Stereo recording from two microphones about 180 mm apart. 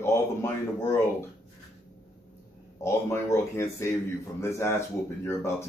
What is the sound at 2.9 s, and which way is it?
Speech, 15° left (ahead or behind).